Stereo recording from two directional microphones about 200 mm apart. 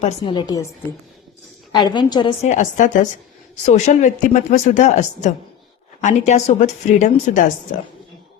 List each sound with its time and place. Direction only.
0.0 s a woman's voice: 30° left (ahead or behind)
1.7 s a woman's voice: 20° left (ahead or behind)
2.4 s speech: 35° left (ahead or behind)